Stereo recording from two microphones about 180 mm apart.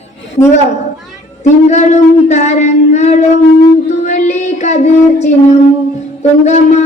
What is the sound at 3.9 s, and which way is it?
Child singing, 40° left (ahead or behind).